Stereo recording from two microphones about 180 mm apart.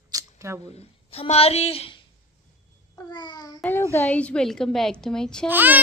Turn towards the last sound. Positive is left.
turn(degrees=-10)  # may be behind; listen again after turning